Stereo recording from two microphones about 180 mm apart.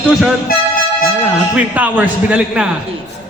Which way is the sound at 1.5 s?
10° right (ahead or behind).